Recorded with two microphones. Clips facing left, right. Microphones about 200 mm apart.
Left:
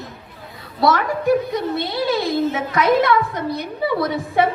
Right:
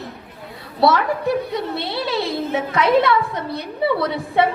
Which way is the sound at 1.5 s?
30° right (ahead or behind).